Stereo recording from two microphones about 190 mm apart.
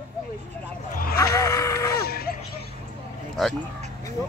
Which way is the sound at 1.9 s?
55° left (ahead or behind).